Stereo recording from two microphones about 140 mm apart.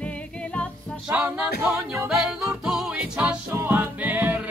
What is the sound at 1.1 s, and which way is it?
Music, 10° right (ahead or behind).